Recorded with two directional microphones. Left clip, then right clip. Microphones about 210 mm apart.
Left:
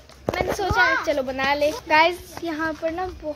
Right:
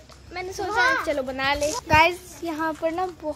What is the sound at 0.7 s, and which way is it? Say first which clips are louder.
Speech: left 1 dB; 40° right (ahead or behind).